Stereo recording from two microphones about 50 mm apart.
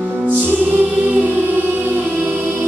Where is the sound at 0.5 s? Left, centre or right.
Right.